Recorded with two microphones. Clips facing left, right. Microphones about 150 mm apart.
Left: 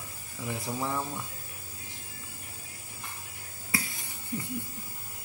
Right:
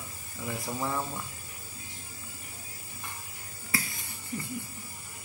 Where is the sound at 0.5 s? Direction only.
5° left (ahead or behind).